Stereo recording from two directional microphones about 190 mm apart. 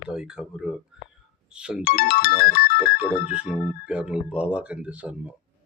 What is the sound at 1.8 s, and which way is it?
Ringtone, 50° left (ahead or behind).